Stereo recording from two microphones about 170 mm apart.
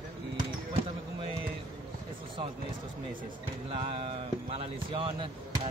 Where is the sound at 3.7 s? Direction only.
35° right (ahead or behind).